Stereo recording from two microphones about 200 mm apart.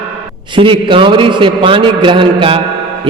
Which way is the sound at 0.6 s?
25° right (ahead or behind).